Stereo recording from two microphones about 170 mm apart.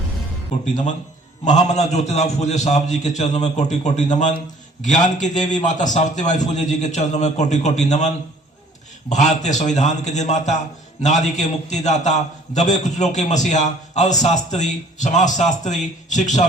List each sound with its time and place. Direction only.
1.5 s a man's voice: 45° left (ahead or behind)